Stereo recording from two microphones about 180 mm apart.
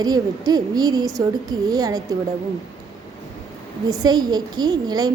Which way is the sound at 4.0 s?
20° right (ahead or behind).